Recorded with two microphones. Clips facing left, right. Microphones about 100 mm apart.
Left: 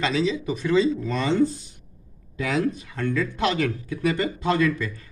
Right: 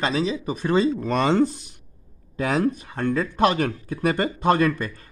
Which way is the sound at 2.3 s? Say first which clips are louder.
Right 2 dB; 45° right (ahead or behind).